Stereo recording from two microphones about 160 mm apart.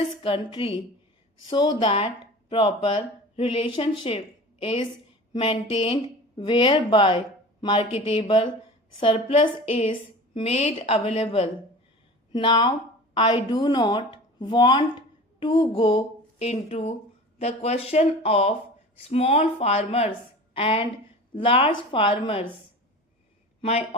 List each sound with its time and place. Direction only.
0.2 s speech: 30° left (ahead or behind)
23.6 s speech: 40° left (ahead or behind)